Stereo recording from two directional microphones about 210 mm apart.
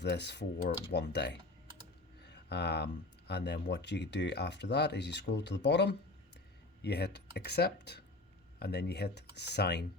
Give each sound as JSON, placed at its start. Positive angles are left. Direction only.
{"t": 0.0, "sound": "speech", "side_deg": 55}